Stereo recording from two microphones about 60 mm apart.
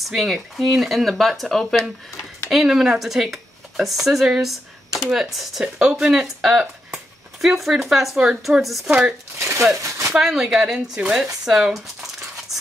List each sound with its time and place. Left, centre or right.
0.0 s speech: centre
2.5 s speech: centre
9.4 s speech: right
10.1 s speech: centre